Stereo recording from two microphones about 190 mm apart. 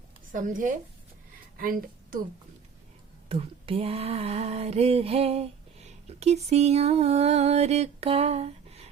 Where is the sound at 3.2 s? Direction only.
30° right (ahead or behind).